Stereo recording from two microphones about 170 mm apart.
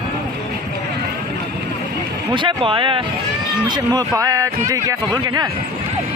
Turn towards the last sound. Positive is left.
turn(degrees=-20)  # may be behind; listen again after turning